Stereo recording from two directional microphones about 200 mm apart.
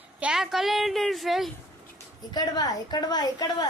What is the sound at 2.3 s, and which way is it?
A woman's voice, 20° left (ahead or behind).